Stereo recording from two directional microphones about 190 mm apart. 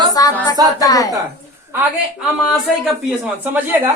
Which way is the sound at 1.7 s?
5° right (ahead or behind).